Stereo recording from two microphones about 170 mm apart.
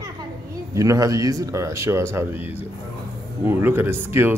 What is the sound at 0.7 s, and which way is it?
Speech, 20° right (ahead or behind).